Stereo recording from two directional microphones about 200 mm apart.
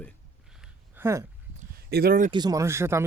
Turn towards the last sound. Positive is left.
turn(degrees=-15)  # may be behind; listen again after turning